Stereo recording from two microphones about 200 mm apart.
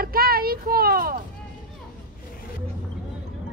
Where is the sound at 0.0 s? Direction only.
50° right (ahead or behind).